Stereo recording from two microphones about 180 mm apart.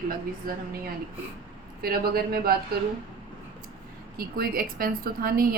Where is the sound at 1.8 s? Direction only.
55° right (ahead or behind).